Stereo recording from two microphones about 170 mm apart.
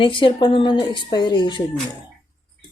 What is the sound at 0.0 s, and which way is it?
A woman's voice, 30° left (ahead or behind).